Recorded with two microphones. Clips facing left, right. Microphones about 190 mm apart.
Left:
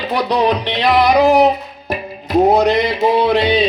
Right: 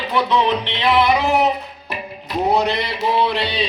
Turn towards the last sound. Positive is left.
turn(degrees=45)  # may be behind; listen again after turning